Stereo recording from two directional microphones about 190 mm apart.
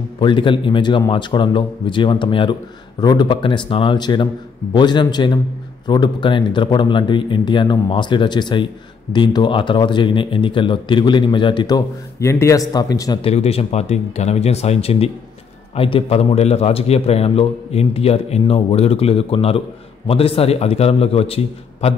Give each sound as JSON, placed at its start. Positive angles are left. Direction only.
{"t": 0.2, "sound": "a man's voice", "side_deg": 25}
{"t": 13.2, "sound": "a man's voice", "side_deg": 30}